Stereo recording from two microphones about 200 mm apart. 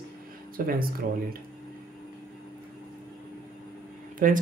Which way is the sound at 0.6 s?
45° right (ahead or behind).